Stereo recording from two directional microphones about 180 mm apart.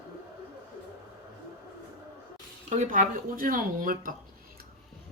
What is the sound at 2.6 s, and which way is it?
Speech, 45° right (ahead or behind).